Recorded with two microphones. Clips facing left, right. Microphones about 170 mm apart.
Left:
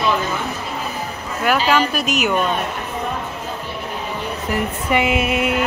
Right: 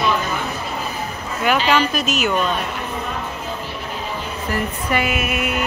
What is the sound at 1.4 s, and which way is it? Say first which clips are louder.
Speech: even; 5° left (ahead or behind).